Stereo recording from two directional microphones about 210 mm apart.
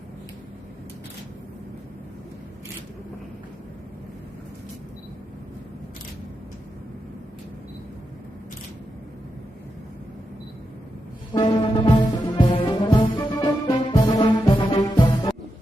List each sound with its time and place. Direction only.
11.3 s music: 25° left (ahead or behind)